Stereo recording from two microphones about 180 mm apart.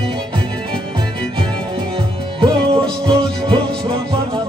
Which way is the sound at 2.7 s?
30° right (ahead or behind).